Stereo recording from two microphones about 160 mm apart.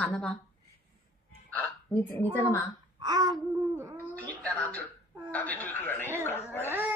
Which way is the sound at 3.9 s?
10° left (ahead or behind).